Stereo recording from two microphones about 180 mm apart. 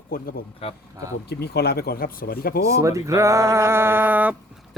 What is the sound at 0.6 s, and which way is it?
Speech, 30° left (ahead or behind).